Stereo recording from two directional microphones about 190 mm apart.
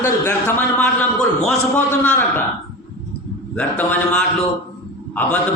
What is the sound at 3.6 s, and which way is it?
A man's voice, 10° left (ahead or behind).